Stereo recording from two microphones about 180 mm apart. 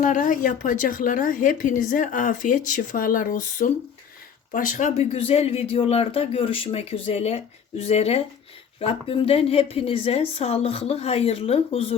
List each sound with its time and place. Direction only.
0.0 s a woman's voice: 45° left (ahead or behind)